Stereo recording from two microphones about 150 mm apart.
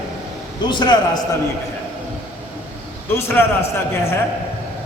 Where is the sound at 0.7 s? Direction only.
30° left (ahead or behind).